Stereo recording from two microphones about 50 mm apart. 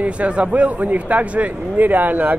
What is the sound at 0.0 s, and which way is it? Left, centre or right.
Speech, right.